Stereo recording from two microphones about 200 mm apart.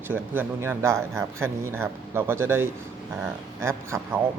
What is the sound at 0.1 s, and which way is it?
A man's voice, 10° right (ahead or behind).